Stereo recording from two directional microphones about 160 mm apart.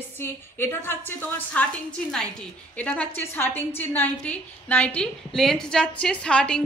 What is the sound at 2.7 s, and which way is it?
A woman's voice, 10° left (ahead or behind).